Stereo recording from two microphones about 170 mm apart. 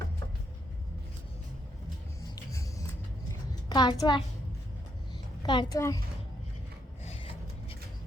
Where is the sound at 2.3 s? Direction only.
20° left (ahead or behind).